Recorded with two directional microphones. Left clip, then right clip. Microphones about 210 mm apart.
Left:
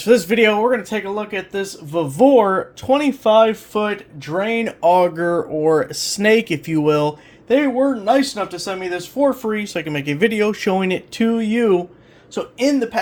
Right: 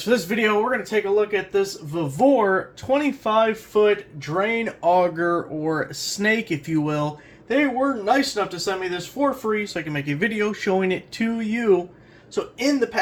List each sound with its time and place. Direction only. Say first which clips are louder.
0.0 s speech: left 7 dB; 40° left (ahead or behind)